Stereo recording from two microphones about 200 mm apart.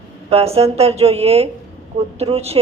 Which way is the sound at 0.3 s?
30° right (ahead or behind).